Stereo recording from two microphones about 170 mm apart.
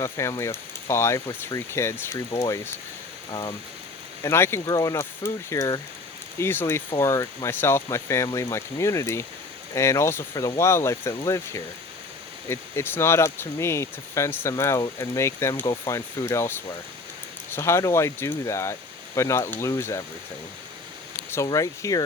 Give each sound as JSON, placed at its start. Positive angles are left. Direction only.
{"t": 0.0, "sound": "speech", "side_deg": 15}
{"t": 4.2, "sound": "speech", "side_deg": 15}
{"t": 21.2, "sound": "speech", "side_deg": 15}